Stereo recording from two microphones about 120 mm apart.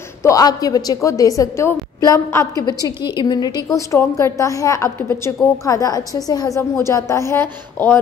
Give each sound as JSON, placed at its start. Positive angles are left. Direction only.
{"t": 0.2, "sound": "a woman's voice", "side_deg": 30}
{"t": 3.9, "sound": "a woman's voice", "side_deg": 25}